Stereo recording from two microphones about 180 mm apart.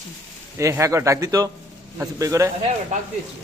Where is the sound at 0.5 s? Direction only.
15° right (ahead or behind).